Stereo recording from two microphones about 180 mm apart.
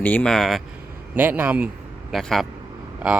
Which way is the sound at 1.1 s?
10° right (ahead or behind).